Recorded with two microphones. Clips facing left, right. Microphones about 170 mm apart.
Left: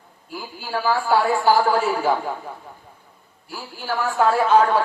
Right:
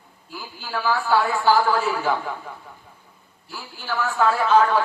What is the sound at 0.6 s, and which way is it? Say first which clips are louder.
A man's voice: left 2 dB; 40° left (ahead or behind).